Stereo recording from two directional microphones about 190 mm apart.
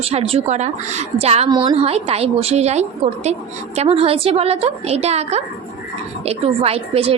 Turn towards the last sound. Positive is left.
turn(degrees=-30)  # may be behind; listen again after turning